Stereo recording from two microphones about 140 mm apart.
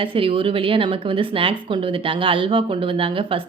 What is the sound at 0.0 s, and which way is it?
Speech, 40° right (ahead or behind).